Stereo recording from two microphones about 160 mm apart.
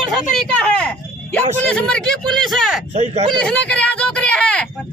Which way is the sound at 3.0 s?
40° right (ahead or behind).